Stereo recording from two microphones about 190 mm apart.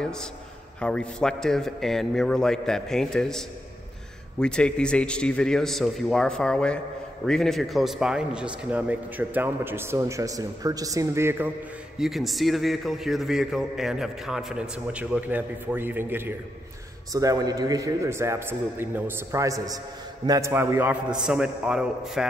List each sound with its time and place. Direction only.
0.0 s a man's voice: 5° left (ahead or behind); by 11.5 s 10° right (ahead or behind)
12.0 s a man's voice: centre (ahead or behind)